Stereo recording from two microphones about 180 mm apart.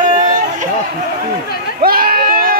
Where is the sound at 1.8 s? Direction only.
55° right (ahead or behind).